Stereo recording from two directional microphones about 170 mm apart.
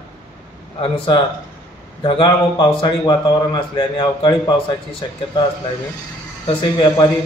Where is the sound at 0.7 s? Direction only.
30° left (ahead or behind).